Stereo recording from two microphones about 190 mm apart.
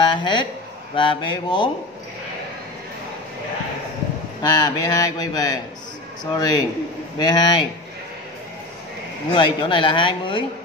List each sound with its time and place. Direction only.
0.0 s a sound: 25° left (ahead or behind)
0.9 s a man's voice: 25° left (ahead or behind)
4.4 s a man's voice: 20° left (ahead or behind)
9.3 s a man's voice: 25° left (ahead or behind)